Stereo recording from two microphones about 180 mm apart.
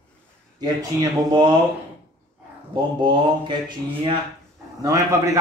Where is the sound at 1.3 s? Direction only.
25° right (ahead or behind).